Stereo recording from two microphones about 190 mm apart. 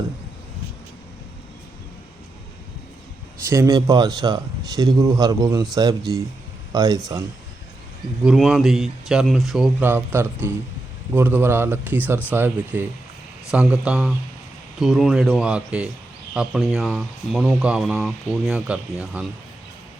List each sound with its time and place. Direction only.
3.4 s speech: 15° right (ahead or behind)
8.2 s speech: 5° right (ahead or behind)
9.8 s speech: 10° right (ahead or behind)